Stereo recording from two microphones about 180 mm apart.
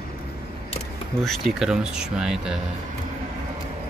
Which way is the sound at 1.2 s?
5° right (ahead or behind).